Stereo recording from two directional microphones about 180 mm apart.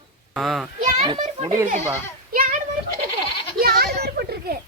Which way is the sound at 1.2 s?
35° right (ahead or behind).